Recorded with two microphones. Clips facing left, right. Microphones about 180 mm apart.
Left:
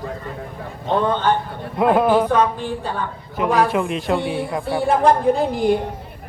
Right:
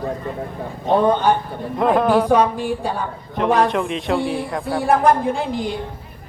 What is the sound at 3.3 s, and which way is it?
A man's voice, 5° left (ahead or behind).